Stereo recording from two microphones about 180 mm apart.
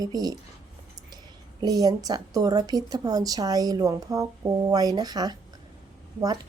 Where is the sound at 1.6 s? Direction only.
20° right (ahead or behind).